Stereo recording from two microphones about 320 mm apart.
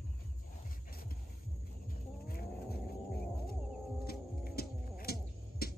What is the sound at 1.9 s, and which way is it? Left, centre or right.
Wild animals, left.